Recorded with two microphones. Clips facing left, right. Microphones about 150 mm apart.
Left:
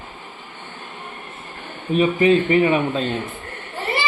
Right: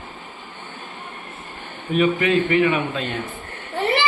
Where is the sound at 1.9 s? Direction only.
30° left (ahead or behind).